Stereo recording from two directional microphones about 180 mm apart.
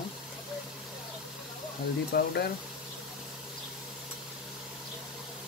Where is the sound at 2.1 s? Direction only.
60° left (ahead or behind).